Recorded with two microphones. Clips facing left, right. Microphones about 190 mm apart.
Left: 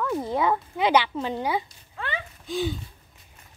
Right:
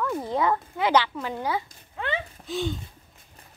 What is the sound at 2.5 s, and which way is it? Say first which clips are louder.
Speech: left 1 dB; centre (ahead or behind).